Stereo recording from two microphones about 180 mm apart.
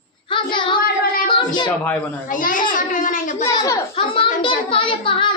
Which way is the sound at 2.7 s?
45° left (ahead or behind).